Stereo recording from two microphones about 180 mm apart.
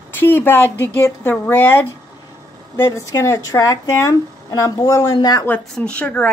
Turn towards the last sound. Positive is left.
turn(degrees=5)  # may be behind; listen again after turning